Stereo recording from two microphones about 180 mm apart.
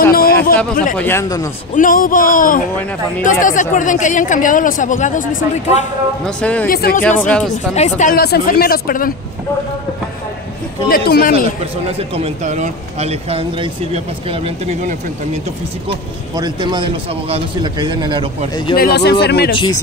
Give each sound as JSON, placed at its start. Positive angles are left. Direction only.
{"t": 0.1, "sound": "a sound", "side_deg": 55}
{"t": 0.9, "sound": "speech", "side_deg": 15}
{"t": 1.8, "sound": "speech", "side_deg": 50}
{"t": 6.2, "sound": "speech", "side_deg": 5}
{"t": 6.7, "sound": "speech", "side_deg": 55}
{"t": 7.0, "sound": "speech", "side_deg": 10}
{"t": 7.7, "sound": "speech", "side_deg": 40}
{"t": 8.2, "sound": "speech", "side_deg": 60}
{"t": 10.9, "sound": "speech", "side_deg": 55}
{"t": 11.8, "sound": "speech", "side_deg": -35}
{"t": 16.3, "sound": "speech", "side_deg": -25}
{"t": 18.8, "sound": "speech", "side_deg": 60}
{"t": 19.5, "sound": "speech", "side_deg": 25}